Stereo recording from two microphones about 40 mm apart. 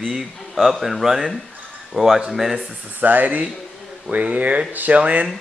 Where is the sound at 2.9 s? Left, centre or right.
Right.